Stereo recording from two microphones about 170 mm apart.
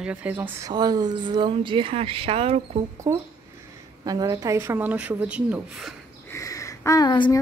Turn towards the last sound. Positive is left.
turn(degrees=25)  # may be behind; listen again after turning